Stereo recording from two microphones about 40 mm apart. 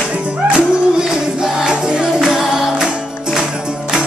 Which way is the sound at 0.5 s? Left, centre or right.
Centre.